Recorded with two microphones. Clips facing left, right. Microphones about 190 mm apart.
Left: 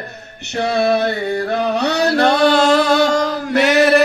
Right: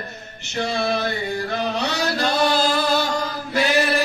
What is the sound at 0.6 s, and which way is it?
Music, 65° left (ahead or behind).